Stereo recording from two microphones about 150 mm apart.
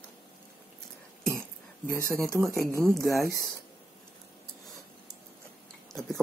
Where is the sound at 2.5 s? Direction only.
20° right (ahead or behind).